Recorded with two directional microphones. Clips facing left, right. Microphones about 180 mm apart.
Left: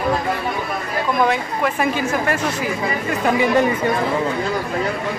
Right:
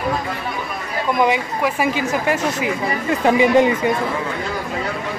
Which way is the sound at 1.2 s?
10° right (ahead or behind).